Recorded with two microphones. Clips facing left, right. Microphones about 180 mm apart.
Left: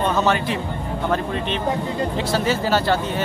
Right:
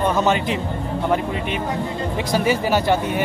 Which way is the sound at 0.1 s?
15° right (ahead or behind).